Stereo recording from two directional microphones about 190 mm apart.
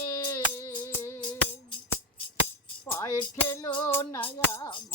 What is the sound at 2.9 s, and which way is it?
Music, 15° left (ahead or behind).